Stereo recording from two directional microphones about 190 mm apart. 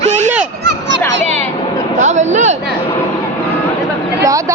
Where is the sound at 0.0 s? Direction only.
40° right (ahead or behind).